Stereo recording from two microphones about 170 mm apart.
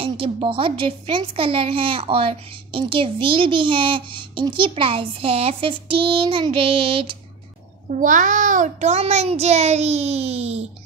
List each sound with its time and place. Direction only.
0.0 s speech: 30° right (ahead or behind)
8.0 s speech: 50° right (ahead or behind)